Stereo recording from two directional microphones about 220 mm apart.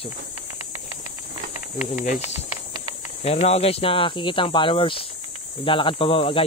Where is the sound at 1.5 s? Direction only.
30° left (ahead or behind).